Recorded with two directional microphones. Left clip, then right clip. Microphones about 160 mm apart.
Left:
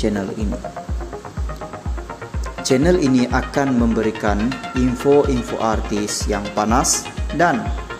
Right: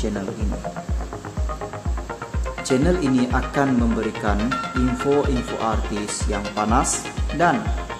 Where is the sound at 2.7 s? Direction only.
20° left (ahead or behind).